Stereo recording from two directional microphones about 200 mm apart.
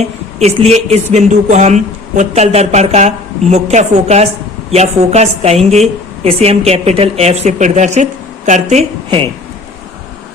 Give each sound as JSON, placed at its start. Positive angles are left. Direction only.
{"t": 0.0, "sound": "speech", "side_deg": -35}
{"t": 9.0, "sound": "speech", "side_deg": -25}